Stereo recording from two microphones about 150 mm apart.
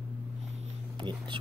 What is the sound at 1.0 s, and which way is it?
Whispering, 30° right (ahead or behind).